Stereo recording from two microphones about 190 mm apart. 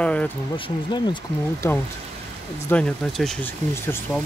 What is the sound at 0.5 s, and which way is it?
Speech, 25° left (ahead or behind).